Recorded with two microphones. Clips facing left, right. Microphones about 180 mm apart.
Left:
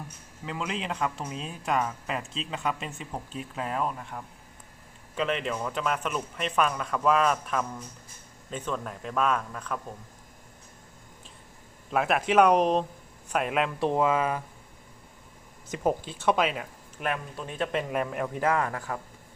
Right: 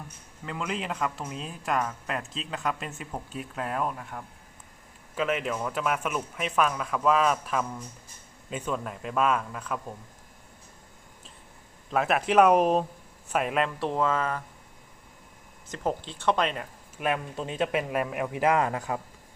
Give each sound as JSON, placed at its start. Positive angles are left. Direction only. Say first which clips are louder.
{"t": 0.4, "sound": "speech", "louder": "even", "side_deg": 0}
{"t": 11.9, "sound": "speech", "louder": "even", "side_deg": 0}
{"t": 13.7, "sound": "speech", "louder": "left 2 dB", "side_deg": 15}
{"t": 15.7, "sound": "speech", "louder": "left 3 dB", "side_deg": 10}
{"t": 17.0, "sound": "a man's voice", "louder": "right 3 dB", "side_deg": -10}
{"t": 17.3, "sound": "speech", "louder": "right 3 dB", "side_deg": -20}
{"t": 17.7, "sound": "a man's voice", "louder": "right 1 dB", "side_deg": -5}